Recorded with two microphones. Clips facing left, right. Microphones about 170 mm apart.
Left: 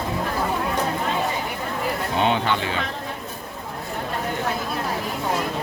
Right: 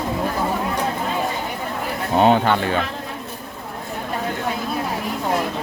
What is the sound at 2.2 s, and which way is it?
Speech, 45° right (ahead or behind).